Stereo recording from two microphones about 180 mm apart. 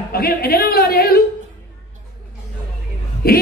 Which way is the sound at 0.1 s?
55° left (ahead or behind).